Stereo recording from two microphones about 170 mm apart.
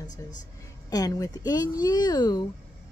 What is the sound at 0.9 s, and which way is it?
Speech, 20° left (ahead or behind).